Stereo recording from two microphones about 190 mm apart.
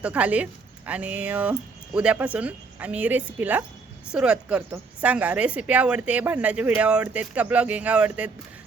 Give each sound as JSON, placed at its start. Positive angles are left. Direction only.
{"t": 0.0, "sound": "a woman's voice", "side_deg": -5}